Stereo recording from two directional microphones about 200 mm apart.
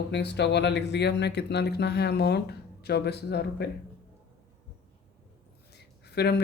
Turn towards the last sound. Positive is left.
turn(degrees=55)  # may be behind; listen again after turning